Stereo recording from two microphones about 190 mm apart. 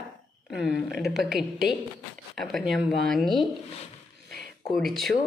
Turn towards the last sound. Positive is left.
turn(degrees=0)  # may be behind; listen again after turning